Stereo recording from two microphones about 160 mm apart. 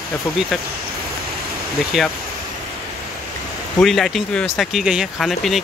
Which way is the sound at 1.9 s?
Centre (ahead or behind).